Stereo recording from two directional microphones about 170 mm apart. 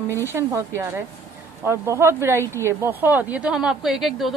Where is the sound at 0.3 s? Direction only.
15° right (ahead or behind).